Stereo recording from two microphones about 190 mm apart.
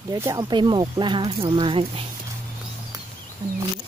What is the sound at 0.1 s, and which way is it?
Speech, 20° right (ahead or behind).